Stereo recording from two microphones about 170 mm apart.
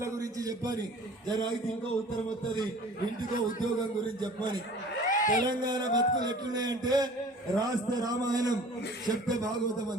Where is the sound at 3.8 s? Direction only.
25° right (ahead or behind).